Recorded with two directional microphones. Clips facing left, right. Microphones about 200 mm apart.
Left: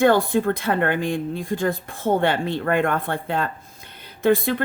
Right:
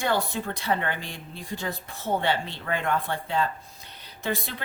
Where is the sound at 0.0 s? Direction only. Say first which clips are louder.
Left 10 dB; 55° left (ahead or behind).